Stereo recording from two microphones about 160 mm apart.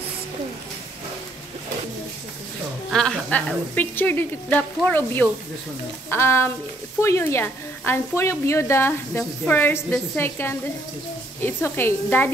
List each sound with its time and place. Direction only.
2.9 s a woman's voice: 5° left (ahead or behind)